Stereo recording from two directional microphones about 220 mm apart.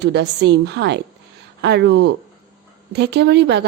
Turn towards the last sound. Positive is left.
turn(degrees=-50)  # may be behind; listen again after turning